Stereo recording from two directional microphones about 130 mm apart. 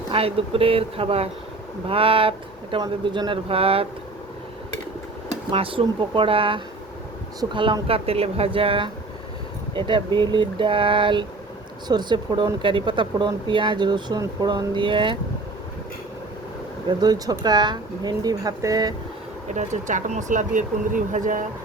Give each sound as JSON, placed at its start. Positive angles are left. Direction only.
{"t": 0.1, "sound": "speech", "side_deg": -45}
{"t": 5.5, "sound": "speech", "side_deg": -45}
{"t": 17.0, "sound": "speech", "side_deg": -30}
{"t": 19.5, "sound": "speech", "side_deg": -70}